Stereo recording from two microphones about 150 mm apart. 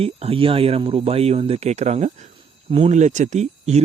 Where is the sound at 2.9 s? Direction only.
55° right (ahead or behind).